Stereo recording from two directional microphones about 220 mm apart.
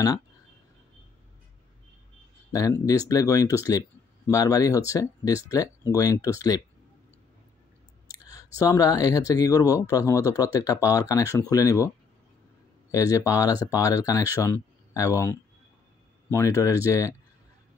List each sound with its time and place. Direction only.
2.5 s speech: 15° left (ahead or behind)
8.1 s speech: 15° left (ahead or behind)
12.9 s speech: 15° left (ahead or behind)